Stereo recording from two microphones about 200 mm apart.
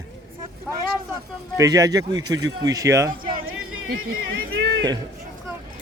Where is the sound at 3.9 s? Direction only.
90° right.